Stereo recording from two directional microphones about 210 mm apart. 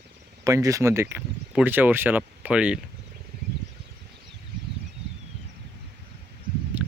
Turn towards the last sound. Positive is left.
turn(degrees=-5)  # may be behind; listen again after turning